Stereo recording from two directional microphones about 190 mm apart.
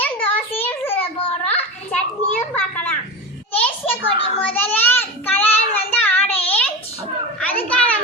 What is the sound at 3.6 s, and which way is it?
Children playing, 10° left (ahead or behind).